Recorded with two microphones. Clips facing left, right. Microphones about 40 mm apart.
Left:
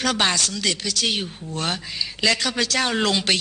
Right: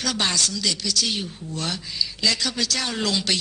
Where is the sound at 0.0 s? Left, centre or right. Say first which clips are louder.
Left 3 dB; left.